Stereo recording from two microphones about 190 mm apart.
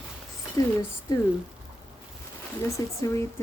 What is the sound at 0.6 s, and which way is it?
Speech, 15° left (ahead or behind).